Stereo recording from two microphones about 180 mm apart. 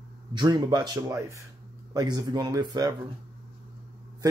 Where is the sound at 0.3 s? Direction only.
25° right (ahead or behind).